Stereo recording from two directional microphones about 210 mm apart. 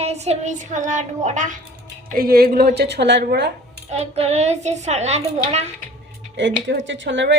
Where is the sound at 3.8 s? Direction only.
30° right (ahead or behind).